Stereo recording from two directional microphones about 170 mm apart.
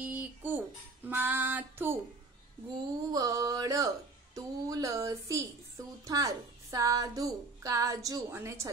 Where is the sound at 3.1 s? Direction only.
20° right (ahead or behind).